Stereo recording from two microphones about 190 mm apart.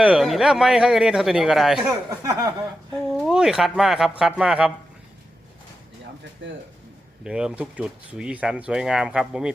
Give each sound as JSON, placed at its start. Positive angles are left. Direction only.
{"t": 0.0, "sound": "speech", "side_deg": -5}
{"t": 2.0, "sound": "a sound", "side_deg": -15}
{"t": 2.9, "sound": "speech", "side_deg": 0}
{"t": 7.3, "sound": "speech", "side_deg": -5}